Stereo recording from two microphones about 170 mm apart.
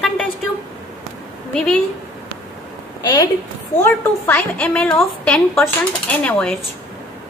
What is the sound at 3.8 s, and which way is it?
A woman's voice, 10° left (ahead or behind).